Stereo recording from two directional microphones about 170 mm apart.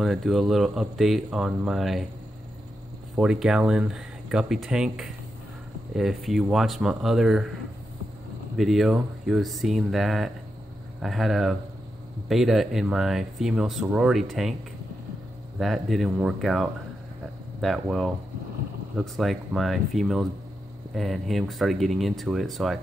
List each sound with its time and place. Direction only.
0.0 s speech: centre (ahead or behind)
3.2 s speech: 5° right (ahead or behind)
8.5 s speech: centre (ahead or behind)
15.6 s speech: centre (ahead or behind)